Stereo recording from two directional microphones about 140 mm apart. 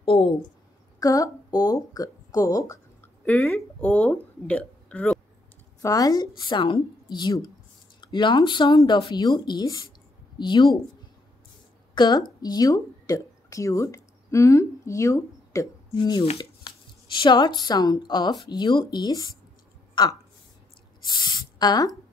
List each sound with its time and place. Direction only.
0.0 s speech: 40° left (ahead or behind)
0.9 s speech: 25° left (ahead or behind)
3.3 s speech: 10° left (ahead or behind)
5.8 s a woman's voice: 25° left (ahead or behind)
11.9 s speech: 30° left (ahead or behind)
21.0 s a sound: 30° left (ahead or behind)